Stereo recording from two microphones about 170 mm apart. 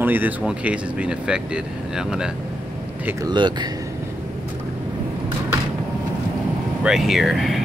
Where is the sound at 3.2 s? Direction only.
25° right (ahead or behind).